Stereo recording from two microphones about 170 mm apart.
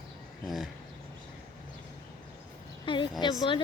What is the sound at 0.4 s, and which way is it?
Speech, centre (ahead or behind).